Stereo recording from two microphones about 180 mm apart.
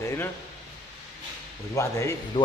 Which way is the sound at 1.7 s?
15° left (ahead or behind).